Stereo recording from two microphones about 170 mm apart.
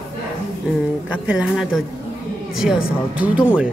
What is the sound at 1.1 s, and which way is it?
Speech, 5° right (ahead or behind).